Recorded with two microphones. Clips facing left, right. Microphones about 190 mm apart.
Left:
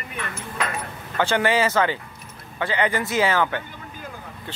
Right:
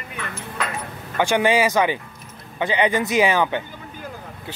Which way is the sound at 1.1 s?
15° right (ahead or behind).